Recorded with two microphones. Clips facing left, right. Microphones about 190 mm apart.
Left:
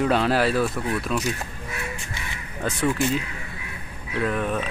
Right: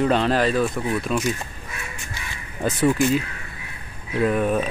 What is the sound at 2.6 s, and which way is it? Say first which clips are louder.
Speech: right 4 dB; 5° right (ahead or behind).